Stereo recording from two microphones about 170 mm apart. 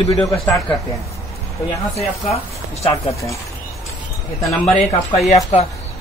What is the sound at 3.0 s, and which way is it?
Speech, 20° left (ahead or behind).